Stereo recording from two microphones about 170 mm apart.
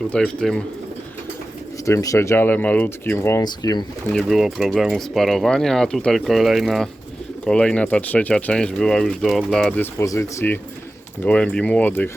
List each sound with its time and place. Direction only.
0.1 s speech: 5° left (ahead or behind)
1.8 s speech: 20° left (ahead or behind)
4.1 s speech: centre (ahead or behind)